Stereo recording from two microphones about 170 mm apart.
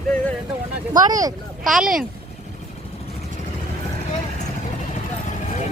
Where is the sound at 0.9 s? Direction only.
20° right (ahead or behind).